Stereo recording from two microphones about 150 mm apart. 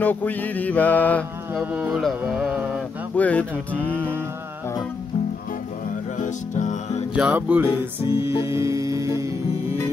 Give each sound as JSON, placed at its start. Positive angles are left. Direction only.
{"t": 0.0, "sound": "mantra", "side_deg": 10}
{"t": 1.5, "sound": "cattle", "side_deg": -10}
{"t": 2.0, "sound": "music", "side_deg": -5}
{"t": 3.2, "sound": "mantra", "side_deg": 10}
{"t": 6.1, "sound": "music", "side_deg": 55}
{"t": 7.2, "sound": "cattle", "side_deg": -10}
{"t": 7.6, "sound": "music", "side_deg": 40}
{"t": 8.5, "sound": "music", "side_deg": -20}